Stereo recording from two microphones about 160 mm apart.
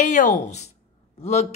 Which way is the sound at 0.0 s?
50° left (ahead or behind).